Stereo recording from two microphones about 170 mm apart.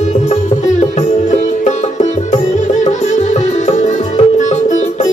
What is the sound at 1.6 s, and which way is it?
Music, 45° left (ahead or behind).